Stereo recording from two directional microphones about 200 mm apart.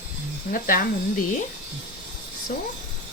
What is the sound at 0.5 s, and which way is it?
Speech, 40° left (ahead or behind).